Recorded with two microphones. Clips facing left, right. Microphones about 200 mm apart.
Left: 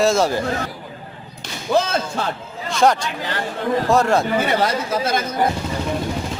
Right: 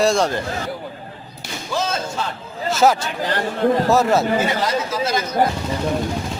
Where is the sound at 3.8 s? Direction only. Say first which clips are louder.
Right 1 dB; 5° right (ahead or behind).